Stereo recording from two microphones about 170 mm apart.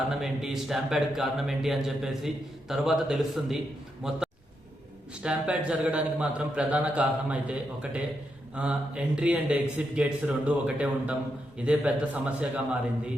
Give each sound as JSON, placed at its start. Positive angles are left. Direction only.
{"t": 0.1, "sound": "speech", "side_deg": 0}
{"t": 5.2, "sound": "speech", "side_deg": -5}